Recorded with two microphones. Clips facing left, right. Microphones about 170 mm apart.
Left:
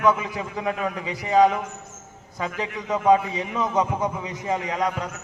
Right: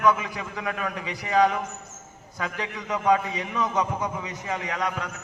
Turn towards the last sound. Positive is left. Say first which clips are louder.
# left 3 dB
turn(degrees=30)  # may be behind; listen again after turning